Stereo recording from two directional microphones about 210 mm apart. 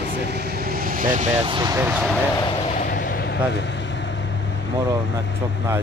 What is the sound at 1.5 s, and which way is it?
Speech, 20° right (ahead or behind).